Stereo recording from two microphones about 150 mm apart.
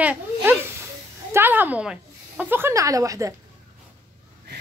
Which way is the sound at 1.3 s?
15° right (ahead or behind).